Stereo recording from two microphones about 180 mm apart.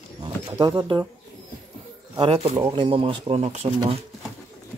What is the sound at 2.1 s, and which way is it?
Speech, 30° right (ahead or behind).